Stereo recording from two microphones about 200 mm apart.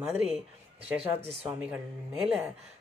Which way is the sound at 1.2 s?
30° right (ahead or behind).